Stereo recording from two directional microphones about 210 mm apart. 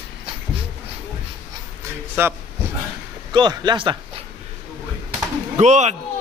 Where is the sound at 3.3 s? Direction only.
20° right (ahead or behind).